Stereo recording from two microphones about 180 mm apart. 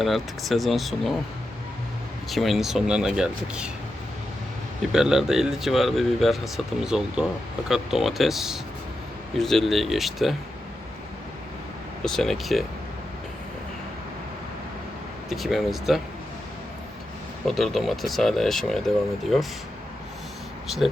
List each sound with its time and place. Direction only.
0.0 s speech: centre (ahead or behind)
2.3 s speech: centre (ahead or behind)
4.9 s speech: 5° right (ahead or behind)
12.0 s speech: centre (ahead or behind)
15.3 s speech: centre (ahead or behind)
17.4 s speech: centre (ahead or behind)
20.7 s speech: centre (ahead or behind)